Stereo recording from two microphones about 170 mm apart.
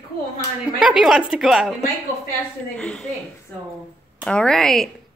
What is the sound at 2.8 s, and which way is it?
Speech, 5° left (ahead or behind).